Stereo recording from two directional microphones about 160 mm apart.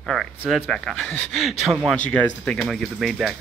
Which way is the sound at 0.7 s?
Centre (ahead or behind).